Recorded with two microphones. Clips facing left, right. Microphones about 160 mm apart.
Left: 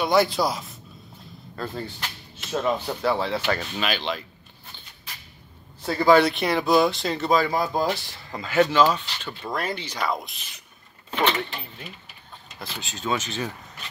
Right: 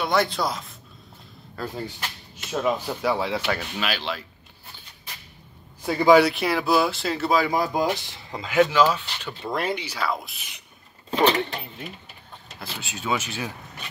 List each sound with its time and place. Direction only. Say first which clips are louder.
0.0 s a man's voice: left 3 dB; centre (ahead or behind)
1.6 s speech: even; 10° right (ahead or behind)
5.8 s speech: right 1 dB; 15° right (ahead or behind)
9.4 s speech: right 2 dB; 20° right (ahead or behind)
10.0 s a man's voice: left 1 dB; 5° right (ahead or behind)
11.1 s speech: right 4 dB; 35° right (ahead or behind)
12.5 s speech: even; 5° right (ahead or behind)